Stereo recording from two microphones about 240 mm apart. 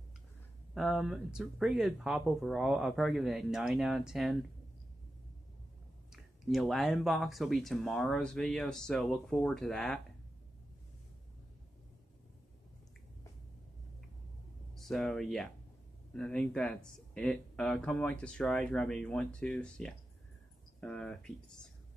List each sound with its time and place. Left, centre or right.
0.7 s speech: centre
6.4 s speech: centre
14.8 s speech: centre